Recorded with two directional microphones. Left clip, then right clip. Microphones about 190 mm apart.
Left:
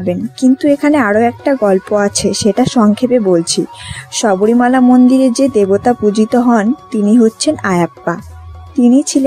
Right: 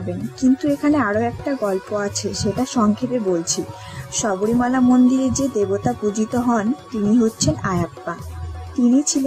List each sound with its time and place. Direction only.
0.4 s speech: 25° left (ahead or behind)